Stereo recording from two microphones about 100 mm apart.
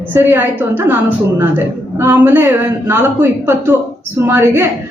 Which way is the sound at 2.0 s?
20° right (ahead or behind).